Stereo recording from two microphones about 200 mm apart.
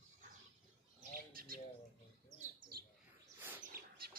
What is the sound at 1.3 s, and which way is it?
Bird, 45° right (ahead or behind).